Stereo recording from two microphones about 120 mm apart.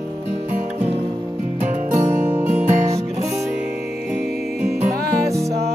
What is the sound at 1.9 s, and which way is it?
Music, 90° right.